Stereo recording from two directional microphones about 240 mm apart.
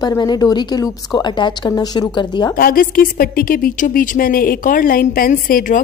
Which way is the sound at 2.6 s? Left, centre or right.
Left.